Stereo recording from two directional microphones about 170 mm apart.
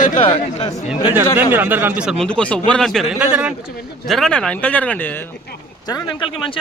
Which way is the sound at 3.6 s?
65° left (ahead or behind).